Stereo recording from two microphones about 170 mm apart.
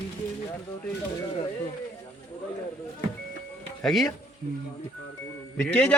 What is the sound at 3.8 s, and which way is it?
Speech, centre (ahead or behind).